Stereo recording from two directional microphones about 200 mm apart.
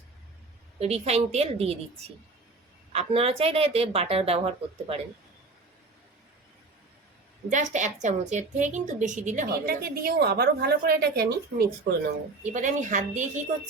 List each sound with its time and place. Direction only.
0.8 s speech: 30° right (ahead or behind)
2.9 s speech: 30° right (ahead or behind)
7.5 s a woman's voice: 35° right (ahead or behind)
12.4 s speech: 40° right (ahead or behind)